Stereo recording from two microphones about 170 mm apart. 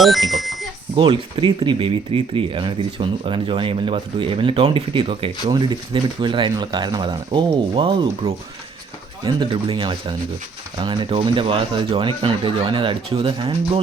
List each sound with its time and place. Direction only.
0.0 s speech: centre (ahead or behind)
0.9 s speech: 30° right (ahead or behind)